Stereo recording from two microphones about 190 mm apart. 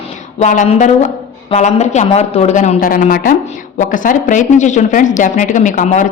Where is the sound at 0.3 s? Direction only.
40° left (ahead or behind).